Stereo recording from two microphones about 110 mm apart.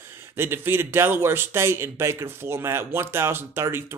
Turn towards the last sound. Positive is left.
turn(degrees=-20)  # may be behind; listen again after turning